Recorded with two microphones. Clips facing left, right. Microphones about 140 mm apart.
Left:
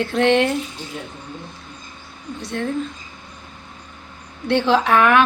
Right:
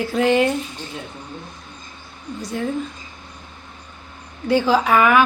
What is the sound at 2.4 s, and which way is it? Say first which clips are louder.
Speech: even; 5° right (ahead or behind).